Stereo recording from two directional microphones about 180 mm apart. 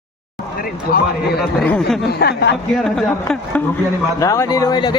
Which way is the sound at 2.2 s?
70° left (ahead or behind).